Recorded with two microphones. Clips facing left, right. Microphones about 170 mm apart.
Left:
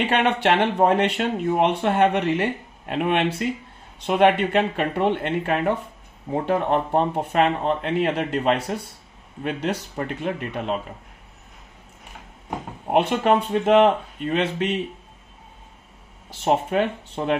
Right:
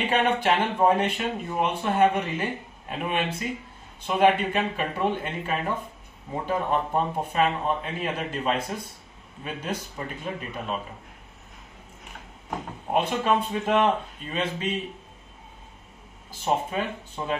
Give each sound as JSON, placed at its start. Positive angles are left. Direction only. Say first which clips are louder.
{"t": 0.0, "sound": "speech", "louder": "left 3 dB", "side_deg": 75}
{"t": 12.9, "sound": "speech", "louder": "left 5 dB", "side_deg": 65}
{"t": 16.3, "sound": "speech", "louder": "left 5 dB", "side_deg": 70}